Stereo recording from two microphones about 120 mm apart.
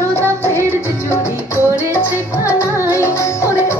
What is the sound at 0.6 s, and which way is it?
Music, 20° right (ahead or behind).